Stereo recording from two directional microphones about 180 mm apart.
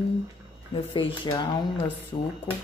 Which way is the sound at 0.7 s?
30° left (ahead or behind).